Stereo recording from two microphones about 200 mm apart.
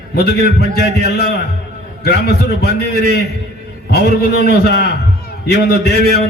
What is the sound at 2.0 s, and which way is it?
Speech, 50° left (ahead or behind).